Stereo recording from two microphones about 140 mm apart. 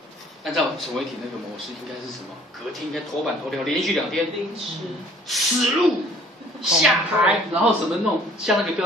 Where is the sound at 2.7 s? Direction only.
Centre (ahead or behind).